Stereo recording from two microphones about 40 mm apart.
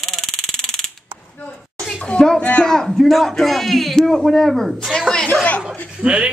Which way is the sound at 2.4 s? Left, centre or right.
Left.